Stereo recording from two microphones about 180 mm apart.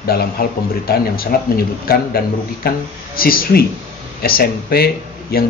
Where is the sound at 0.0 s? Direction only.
60° left (ahead or behind).